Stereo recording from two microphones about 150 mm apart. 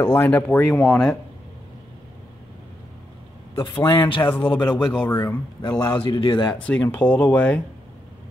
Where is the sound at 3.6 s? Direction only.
15° left (ahead or behind).